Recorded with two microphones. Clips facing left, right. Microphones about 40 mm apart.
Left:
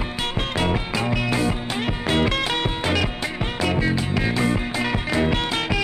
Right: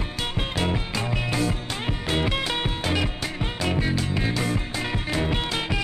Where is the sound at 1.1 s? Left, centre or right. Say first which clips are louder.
Left 3 dB; centre.